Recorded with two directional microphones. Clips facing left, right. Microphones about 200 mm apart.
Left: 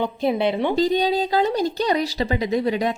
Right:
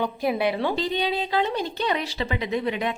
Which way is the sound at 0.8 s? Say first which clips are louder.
Left 6 dB; 40° left (ahead or behind).